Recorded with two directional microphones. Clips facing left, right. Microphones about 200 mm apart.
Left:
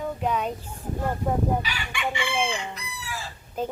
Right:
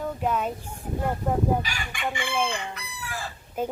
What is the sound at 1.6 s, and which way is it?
Chicken, 45° right (ahead or behind).